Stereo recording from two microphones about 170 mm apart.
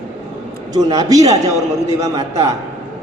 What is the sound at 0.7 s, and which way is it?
A man's voice, 20° right (ahead or behind).